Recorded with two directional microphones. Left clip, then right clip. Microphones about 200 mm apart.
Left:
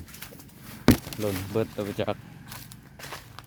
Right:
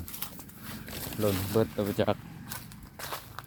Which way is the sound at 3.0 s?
15° right (ahead or behind).